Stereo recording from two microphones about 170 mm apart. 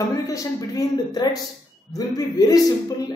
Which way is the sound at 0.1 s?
20° left (ahead or behind).